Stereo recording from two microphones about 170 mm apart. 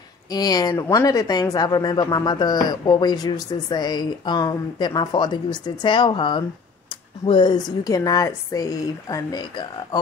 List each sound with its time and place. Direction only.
0.3 s speech: 20° left (ahead or behind)